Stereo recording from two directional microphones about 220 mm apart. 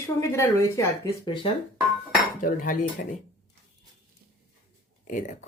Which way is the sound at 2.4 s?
35° left (ahead or behind).